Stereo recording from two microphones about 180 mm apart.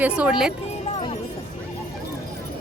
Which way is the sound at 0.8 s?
30° left (ahead or behind).